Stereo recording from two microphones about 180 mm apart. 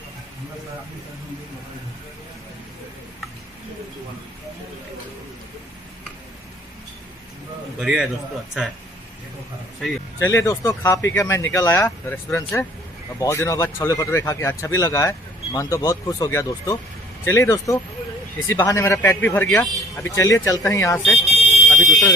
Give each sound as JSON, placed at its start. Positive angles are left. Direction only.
{"t": 7.8, "sound": "a man's voice", "side_deg": -5}
{"t": 10.3, "sound": "speech", "side_deg": 15}
{"t": 21.6, "sound": "a sound", "side_deg": 5}